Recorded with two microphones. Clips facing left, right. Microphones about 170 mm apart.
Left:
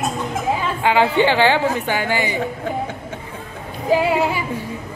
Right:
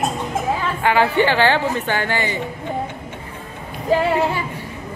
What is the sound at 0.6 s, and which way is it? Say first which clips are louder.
Speech: left 1 dB; 15° left (ahead or behind).